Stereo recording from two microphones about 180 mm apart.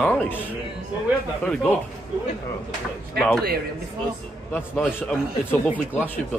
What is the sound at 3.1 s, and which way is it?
Speech, 5° left (ahead or behind).